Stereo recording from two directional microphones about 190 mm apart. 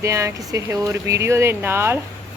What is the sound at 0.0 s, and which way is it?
Speech, 15° right (ahead or behind).